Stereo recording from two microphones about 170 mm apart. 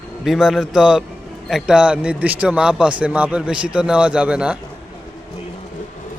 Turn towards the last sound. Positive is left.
turn(degrees=-5)  # may be behind; listen again after turning